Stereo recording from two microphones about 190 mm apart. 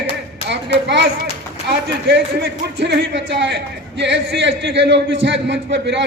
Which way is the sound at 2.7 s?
65° right (ahead or behind).